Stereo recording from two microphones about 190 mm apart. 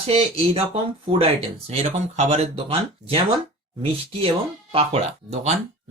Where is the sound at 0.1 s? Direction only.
30° right (ahead or behind).